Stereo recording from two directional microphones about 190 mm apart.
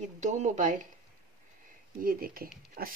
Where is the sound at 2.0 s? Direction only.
50° right (ahead or behind).